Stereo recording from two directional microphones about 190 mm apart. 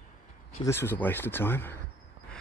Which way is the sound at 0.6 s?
15° left (ahead or behind).